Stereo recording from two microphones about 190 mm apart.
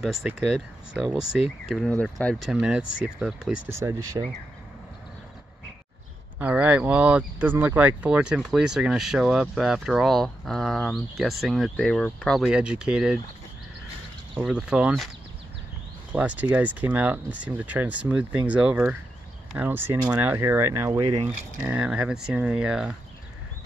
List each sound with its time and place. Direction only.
0.0 s speech: centre (ahead or behind)
3.8 s speech: 15° right (ahead or behind)
6.4 s speech: 10° right (ahead or behind)
14.4 s speech: 5° right (ahead or behind)
16.1 s speech: 10° right (ahead or behind)